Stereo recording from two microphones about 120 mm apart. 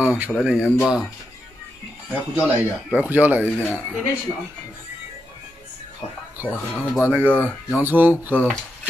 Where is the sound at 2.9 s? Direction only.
15° right (ahead or behind).